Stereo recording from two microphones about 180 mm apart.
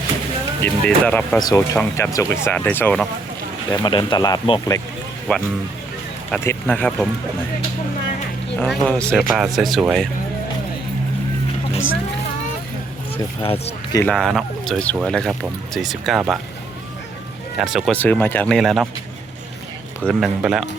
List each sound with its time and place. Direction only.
0.6 s speech: 10° left (ahead or behind)
1.4 s speech: 20° left (ahead or behind)
3.7 s speech: 25° left (ahead or behind)
5.3 s speech: 5° left (ahead or behind)
8.5 s speech: 5° left (ahead or behind)
13.4 s speech: 30° left (ahead or behind)
14.0 s speech: 5° left (ahead or behind)
17.6 s speech: centre (ahead or behind)
17.9 s speech: 10° left (ahead or behind)
20.1 s speech: centre (ahead or behind)